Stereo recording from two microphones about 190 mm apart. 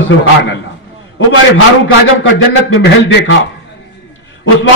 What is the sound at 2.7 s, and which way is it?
Speech, 75° left (ahead or behind).